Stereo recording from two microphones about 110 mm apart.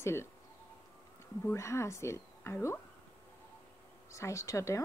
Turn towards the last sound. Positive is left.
turn(degrees=30)  # may be behind; listen again after turning